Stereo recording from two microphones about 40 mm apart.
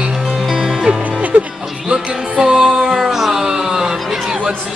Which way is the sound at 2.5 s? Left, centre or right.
Centre.